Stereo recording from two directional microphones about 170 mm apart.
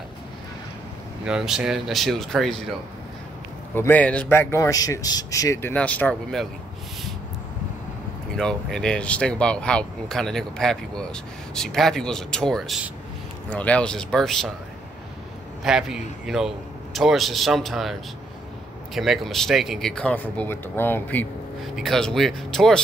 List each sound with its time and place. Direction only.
1.2 s speech: 5° right (ahead or behind)
3.7 s a man's voice: 10° left (ahead or behind)
8.4 s speech: 5° left (ahead or behind)
15.6 s speech: 5° right (ahead or behind)
18.9 s speech: centre (ahead or behind)